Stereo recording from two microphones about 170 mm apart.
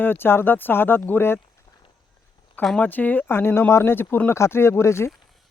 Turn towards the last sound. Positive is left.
turn(degrees=15)  # may be behind; listen again after turning